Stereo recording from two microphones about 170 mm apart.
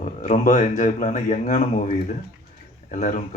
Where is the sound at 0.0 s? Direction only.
50° left (ahead or behind).